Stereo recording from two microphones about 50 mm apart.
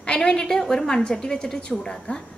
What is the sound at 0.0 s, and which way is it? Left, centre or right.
A woman's voice, centre.